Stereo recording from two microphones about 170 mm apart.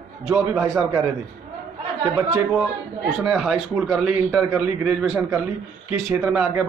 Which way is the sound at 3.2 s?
5° right (ahead or behind).